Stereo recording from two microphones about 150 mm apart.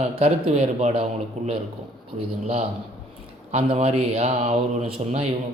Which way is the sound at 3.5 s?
40° right (ahead or behind).